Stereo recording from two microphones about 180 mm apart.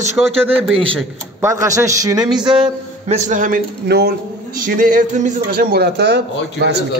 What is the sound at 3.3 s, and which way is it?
Speech, 50° right (ahead or behind).